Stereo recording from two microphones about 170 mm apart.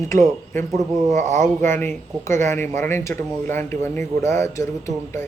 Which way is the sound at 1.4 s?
15° left (ahead or behind).